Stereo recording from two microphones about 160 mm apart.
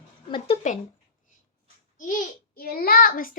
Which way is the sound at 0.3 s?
30° left (ahead or behind).